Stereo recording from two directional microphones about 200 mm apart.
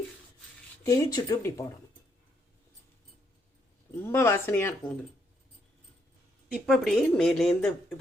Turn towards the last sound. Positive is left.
turn(degrees=0)  # may be behind; listen again after turning